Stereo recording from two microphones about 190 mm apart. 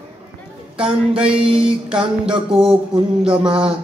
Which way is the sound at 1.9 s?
5° right (ahead or behind).